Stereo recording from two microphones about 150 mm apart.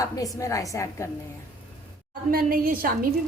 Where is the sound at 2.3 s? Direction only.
80° right.